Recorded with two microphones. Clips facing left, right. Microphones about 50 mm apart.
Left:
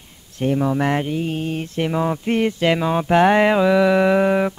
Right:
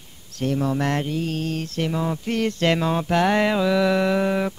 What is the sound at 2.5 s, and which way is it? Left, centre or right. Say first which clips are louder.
Speech: left 3 dB; centre.